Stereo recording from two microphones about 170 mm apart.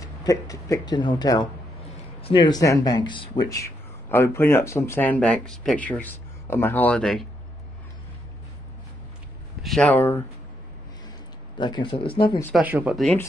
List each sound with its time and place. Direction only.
0.0 s speech: 20° left (ahead or behind); by 7.2 s 5° left (ahead or behind)
9.6 s speech: 5° left (ahead or behind)
11.5 s speech: 25° left (ahead or behind)
12.5 s speech: 10° right (ahead or behind)